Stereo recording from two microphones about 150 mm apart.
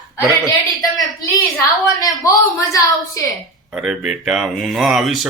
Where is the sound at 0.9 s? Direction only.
20° left (ahead or behind).